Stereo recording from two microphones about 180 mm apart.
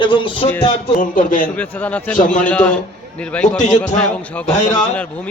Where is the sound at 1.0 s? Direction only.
50° left (ahead or behind).